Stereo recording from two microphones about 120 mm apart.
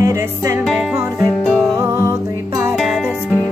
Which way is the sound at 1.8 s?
25° right (ahead or behind).